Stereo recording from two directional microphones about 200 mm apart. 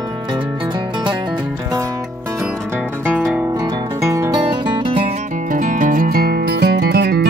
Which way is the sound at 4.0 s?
15° right (ahead or behind).